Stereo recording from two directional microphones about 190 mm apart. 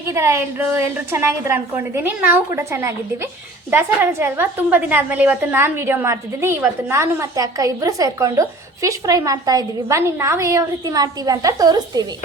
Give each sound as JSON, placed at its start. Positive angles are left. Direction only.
{"t": 0.1, "sound": "a woman's voice", "side_deg": -15}